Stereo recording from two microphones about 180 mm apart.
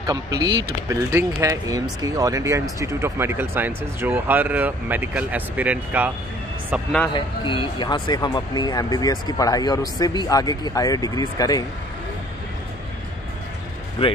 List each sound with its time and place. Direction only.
0.0 s speech: 20° right (ahead or behind)
7.2 s speech: 30° left (ahead or behind)